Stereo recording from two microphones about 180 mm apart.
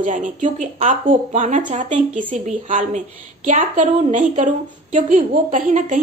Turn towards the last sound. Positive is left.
turn(degrees=-45)  # may be behind; listen again after turning